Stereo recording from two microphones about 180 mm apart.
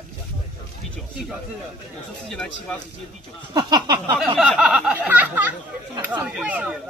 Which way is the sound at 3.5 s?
25° right (ahead or behind).